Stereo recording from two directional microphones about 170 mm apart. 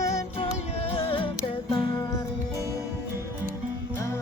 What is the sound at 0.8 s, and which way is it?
Music, 35° left (ahead or behind).